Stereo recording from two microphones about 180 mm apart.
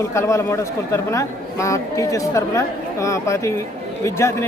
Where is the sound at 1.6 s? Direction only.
15° left (ahead or behind).